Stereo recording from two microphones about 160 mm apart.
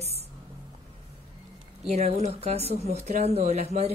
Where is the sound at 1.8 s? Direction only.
40° right (ahead or behind).